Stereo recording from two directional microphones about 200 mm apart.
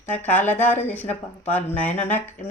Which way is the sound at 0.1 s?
5° left (ahead or behind).